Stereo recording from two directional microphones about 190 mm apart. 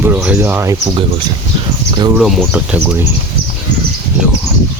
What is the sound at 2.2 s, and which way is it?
Speech, 5° right (ahead or behind).